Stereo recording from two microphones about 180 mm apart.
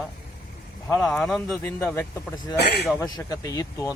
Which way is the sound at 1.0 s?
Centre (ahead or behind).